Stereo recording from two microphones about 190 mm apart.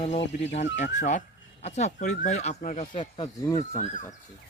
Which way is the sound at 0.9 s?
40° left (ahead or behind).